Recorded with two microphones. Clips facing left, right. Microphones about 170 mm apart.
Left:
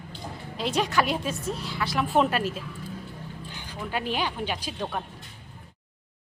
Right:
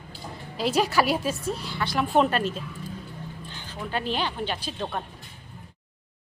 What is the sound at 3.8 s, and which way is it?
A woman's voice, 10° left (ahead or behind).